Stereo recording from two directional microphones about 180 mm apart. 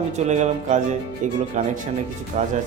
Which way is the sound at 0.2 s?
40° right (ahead or behind).